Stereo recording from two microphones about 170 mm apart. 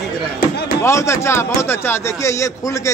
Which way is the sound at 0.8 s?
15° left (ahead or behind).